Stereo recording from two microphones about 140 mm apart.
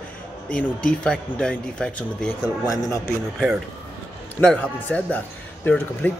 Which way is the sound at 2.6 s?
25° left (ahead or behind).